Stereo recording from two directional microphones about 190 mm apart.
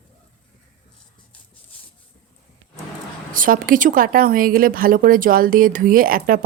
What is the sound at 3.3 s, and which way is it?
A woman's voice, 45° right (ahead or behind).